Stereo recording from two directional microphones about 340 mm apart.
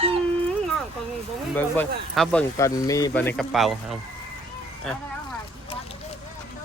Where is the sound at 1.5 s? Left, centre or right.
Centre.